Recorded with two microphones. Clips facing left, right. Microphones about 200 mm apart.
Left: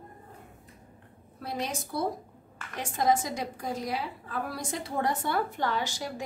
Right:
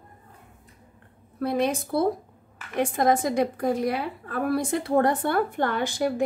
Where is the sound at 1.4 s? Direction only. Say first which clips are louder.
Right 10 dB; 55° right (ahead or behind).